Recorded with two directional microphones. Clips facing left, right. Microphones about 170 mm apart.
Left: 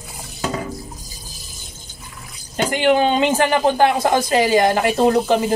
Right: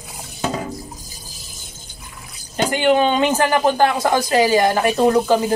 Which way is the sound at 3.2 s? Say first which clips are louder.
Even; 20° left (ahead or behind).